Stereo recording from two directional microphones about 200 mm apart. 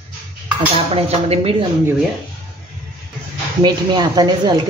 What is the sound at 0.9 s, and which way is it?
Speech, 30° right (ahead or behind).